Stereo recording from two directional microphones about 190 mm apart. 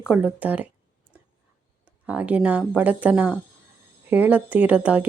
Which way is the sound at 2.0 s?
5° right (ahead or behind).